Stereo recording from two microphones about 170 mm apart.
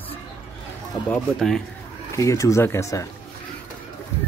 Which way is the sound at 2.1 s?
20° left (ahead or behind).